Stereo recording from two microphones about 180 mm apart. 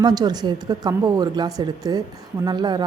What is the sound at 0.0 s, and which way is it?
Speech, 20° right (ahead or behind).